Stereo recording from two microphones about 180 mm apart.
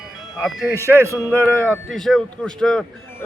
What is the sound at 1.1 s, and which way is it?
Speech, 15° left (ahead or behind).